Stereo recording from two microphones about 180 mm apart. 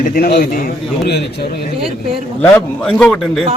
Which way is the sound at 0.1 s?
60° left (ahead or behind).